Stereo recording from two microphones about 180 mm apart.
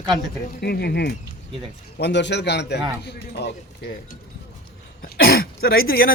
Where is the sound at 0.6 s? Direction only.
60° left (ahead or behind).